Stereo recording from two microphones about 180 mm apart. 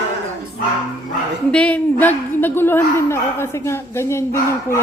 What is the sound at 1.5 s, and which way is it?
A woman's voice, 10° left (ahead or behind).